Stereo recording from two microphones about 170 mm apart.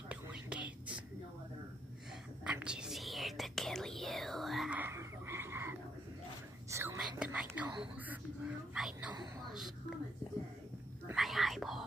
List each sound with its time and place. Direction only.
0.1 s whispering: 5° right (ahead or behind)
2.4 s whispering: 5° right (ahead or behind)
9.5 s a sound: centre (ahead or behind)
11.1 s whispering: centre (ahead or behind)